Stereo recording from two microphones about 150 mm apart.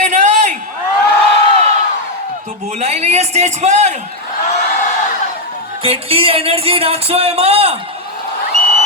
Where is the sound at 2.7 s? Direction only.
45° right (ahead or behind).